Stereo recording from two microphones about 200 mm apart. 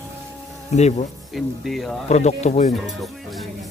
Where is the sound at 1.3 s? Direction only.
Centre (ahead or behind).